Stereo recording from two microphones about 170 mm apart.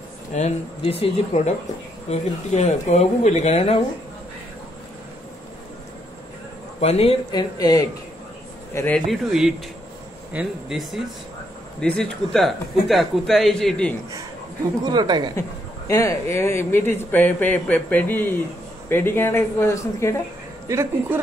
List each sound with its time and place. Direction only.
0.3 s speech: 40° left (ahead or behind)
6.8 s speech: 35° left (ahead or behind)
7.2 s speech: 25° left (ahead or behind)
8.7 s speech: 10° left (ahead or behind)
14.8 s a woman's voice: 25° right (ahead or behind)
15.9 s a man's voice: 15° left (ahead or behind)
20.6 s speech: 15° right (ahead or behind)